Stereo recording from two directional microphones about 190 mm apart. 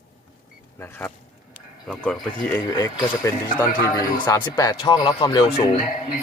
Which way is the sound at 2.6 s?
20° left (ahead or behind).